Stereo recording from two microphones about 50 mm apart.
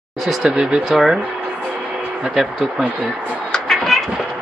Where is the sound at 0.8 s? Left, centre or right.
Centre.